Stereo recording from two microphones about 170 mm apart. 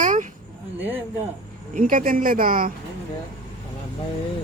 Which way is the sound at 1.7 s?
55° right (ahead or behind).